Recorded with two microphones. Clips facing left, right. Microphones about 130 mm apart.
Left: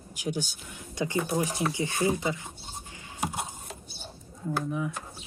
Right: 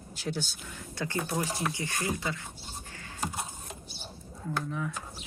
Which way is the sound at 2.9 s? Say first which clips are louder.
Left 3 dB; 10° left (ahead or behind).